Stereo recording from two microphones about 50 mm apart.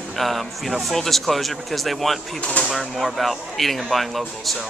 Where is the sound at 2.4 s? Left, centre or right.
Left.